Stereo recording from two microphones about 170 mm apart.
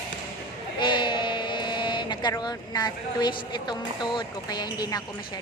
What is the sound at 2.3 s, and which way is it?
A woman's voice, 25° left (ahead or behind).